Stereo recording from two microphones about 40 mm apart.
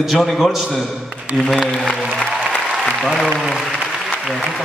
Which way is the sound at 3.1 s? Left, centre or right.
Centre.